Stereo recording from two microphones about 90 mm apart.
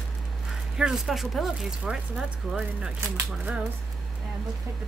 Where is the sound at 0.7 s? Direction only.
5° right (ahead or behind).